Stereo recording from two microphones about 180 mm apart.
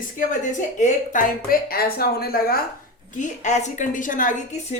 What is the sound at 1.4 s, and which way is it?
A woman's voice, 55° left (ahead or behind).